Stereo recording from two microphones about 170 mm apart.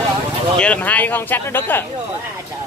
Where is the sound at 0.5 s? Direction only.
10° left (ahead or behind).